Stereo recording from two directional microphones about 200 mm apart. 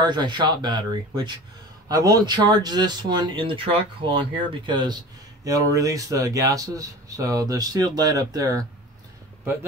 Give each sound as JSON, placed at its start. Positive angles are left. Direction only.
{"t": 0.0, "sound": "speech", "side_deg": -20}